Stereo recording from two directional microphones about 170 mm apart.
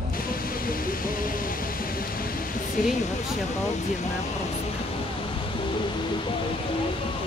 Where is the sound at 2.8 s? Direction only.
55° left (ahead or behind).